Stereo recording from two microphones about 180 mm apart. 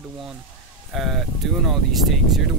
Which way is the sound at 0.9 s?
Centre (ahead or behind).